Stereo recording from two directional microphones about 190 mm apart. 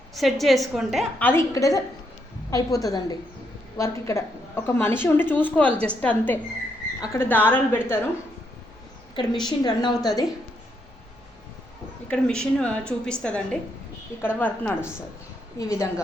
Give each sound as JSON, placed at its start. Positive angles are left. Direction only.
{"t": 0.1, "sound": "a woman's voice", "side_deg": 0}
{"t": 1.2, "sound": "a woman's voice", "side_deg": 10}
{"t": 9.3, "sound": "a woman's voice", "side_deg": 0}
{"t": 9.6, "sound": "a woman's voice", "side_deg": 20}
{"t": 12.1, "sound": "a woman's voice", "side_deg": 5}